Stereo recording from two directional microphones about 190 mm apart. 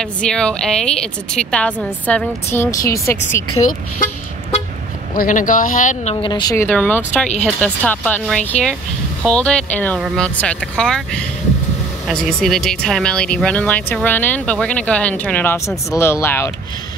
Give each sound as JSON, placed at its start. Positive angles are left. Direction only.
{"t": 0.0, "sound": "speech", "side_deg": 5}
{"t": 3.5, "sound": "speech", "side_deg": 35}
{"t": 5.1, "sound": "speech", "side_deg": 45}
{"t": 6.2, "sound": "speech", "side_deg": 25}
{"t": 6.5, "sound": "speech", "side_deg": 10}